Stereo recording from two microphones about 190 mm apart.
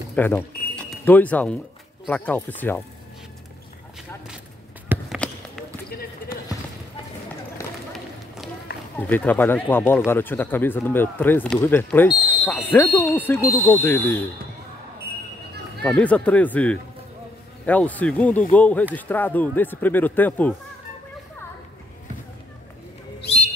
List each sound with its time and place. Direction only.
0.1 s a sound: 10° left (ahead or behind)
0.8 s speech: 10° left (ahead or behind)
4.9 s basketball bounce: 10° right (ahead or behind)
7.6 s run: 15° left (ahead or behind)
8.9 s speech: 10° left (ahead or behind)
15.8 s speech: 5° left (ahead or behind)